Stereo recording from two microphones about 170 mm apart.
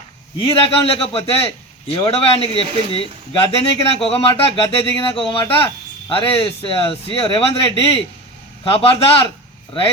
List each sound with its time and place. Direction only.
0.4 s speech: 35° left (ahead or behind)